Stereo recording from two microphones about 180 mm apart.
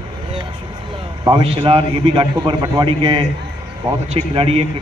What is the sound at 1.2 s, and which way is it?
A man's voice, 30° right (ahead or behind).